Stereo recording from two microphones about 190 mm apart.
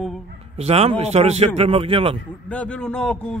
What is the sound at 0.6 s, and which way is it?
A man's voice, 30° right (ahead or behind).